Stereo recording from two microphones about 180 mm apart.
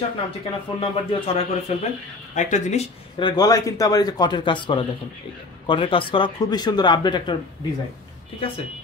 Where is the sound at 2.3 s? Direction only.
40° left (ahead or behind).